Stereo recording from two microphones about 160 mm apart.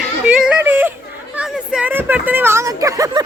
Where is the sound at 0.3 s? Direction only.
5° right (ahead or behind).